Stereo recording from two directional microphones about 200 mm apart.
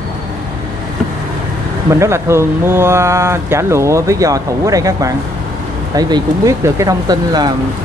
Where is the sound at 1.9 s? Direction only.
15° right (ahead or behind).